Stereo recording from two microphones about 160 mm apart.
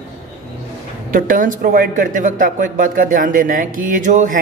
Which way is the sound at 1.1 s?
60° right (ahead or behind).